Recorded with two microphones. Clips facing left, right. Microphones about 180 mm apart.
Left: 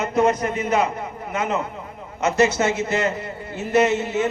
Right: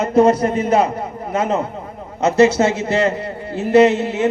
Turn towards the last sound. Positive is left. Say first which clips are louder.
# right 7 dB
turn(degrees=-35)  # may be behind; listen again after turning